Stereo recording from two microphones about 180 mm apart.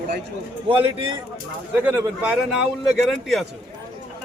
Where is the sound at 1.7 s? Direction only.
10° right (ahead or behind).